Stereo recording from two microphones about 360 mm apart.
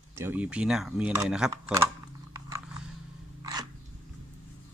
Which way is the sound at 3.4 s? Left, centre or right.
Centre.